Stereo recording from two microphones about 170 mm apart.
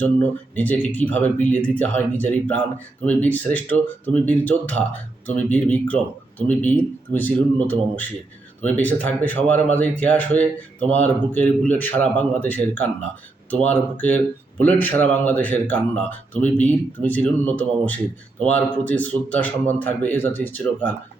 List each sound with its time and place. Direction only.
0.0 s speech: 10° left (ahead or behind)